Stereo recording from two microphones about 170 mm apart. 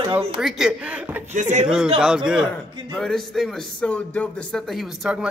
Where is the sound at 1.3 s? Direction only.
45° right (ahead or behind).